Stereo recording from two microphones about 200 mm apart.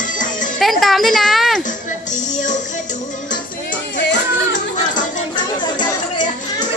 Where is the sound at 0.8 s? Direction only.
Centre (ahead or behind).